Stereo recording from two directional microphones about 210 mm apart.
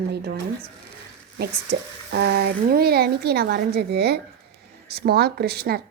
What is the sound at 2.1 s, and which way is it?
A woman's voice, 50° right (ahead or behind).